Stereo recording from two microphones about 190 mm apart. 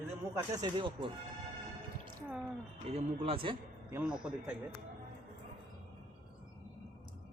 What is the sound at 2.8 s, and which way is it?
Speech, 30° right (ahead or behind).